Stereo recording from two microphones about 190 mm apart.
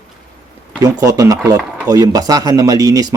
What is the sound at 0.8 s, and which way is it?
Speech, 20° right (ahead or behind).